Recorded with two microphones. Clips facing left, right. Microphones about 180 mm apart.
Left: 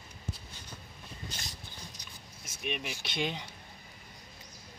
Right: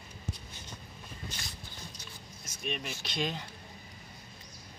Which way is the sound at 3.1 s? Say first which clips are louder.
Even; 15° left (ahead or behind).